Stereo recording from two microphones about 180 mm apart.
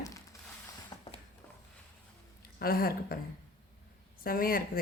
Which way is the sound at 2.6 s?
55° left (ahead or behind).